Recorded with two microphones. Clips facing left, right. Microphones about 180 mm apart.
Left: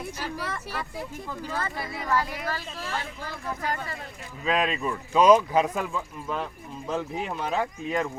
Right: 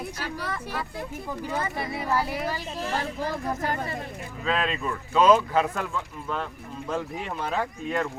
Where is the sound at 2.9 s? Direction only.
40° right (ahead or behind).